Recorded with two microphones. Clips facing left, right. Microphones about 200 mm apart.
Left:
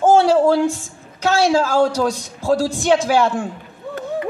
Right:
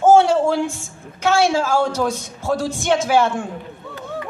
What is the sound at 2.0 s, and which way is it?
Speech, 35° left (ahead or behind).